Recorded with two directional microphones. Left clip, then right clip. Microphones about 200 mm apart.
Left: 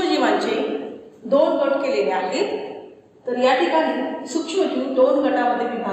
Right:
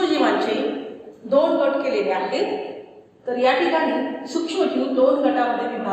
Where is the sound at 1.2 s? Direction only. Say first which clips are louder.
Even; 20° left (ahead or behind).